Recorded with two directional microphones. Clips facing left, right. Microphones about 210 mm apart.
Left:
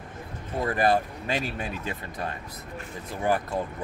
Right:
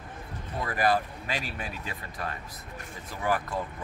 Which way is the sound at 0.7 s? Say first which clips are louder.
Left 3 dB; 25° left (ahead or behind).